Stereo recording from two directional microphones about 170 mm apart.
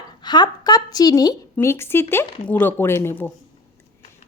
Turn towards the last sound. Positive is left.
turn(degrees=10)  # may be behind; listen again after turning